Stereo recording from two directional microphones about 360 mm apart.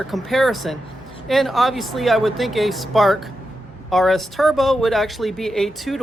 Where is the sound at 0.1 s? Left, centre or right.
Centre.